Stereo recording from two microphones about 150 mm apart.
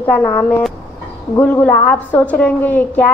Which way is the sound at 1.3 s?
15° left (ahead or behind).